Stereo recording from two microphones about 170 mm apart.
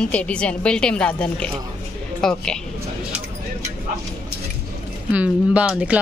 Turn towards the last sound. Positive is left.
turn(degrees=-5)  # may be behind; listen again after turning